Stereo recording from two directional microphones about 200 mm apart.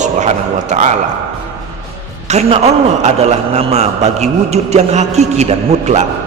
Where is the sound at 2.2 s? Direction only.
35° right (ahead or behind).